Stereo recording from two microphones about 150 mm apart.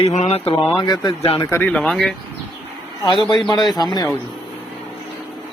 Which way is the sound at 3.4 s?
30° left (ahead or behind).